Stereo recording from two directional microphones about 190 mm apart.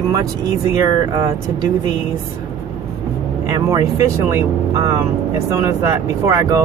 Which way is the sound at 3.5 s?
15° right (ahead or behind).